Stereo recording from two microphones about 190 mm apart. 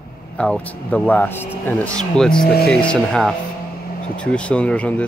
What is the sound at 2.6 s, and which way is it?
Speech, 5° left (ahead or behind).